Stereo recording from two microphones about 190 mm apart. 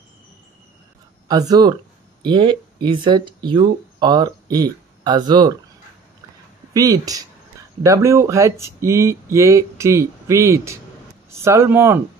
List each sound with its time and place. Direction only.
1.3 s speech: 20° right (ahead or behind)
6.7 s speech: 20° right (ahead or behind)